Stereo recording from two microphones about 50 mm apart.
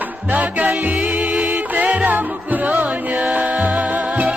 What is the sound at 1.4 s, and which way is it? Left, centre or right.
Music, right.